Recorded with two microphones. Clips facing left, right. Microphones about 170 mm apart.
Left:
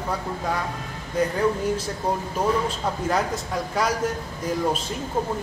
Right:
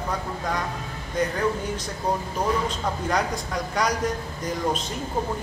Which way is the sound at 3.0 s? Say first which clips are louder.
Left 1 dB; 5° left (ahead or behind).